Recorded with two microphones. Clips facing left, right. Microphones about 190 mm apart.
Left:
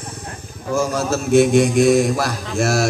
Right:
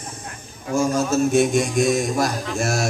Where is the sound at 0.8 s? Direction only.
65° left (ahead or behind).